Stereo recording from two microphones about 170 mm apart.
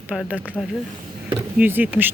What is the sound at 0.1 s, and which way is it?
Speech, 5° right (ahead or behind).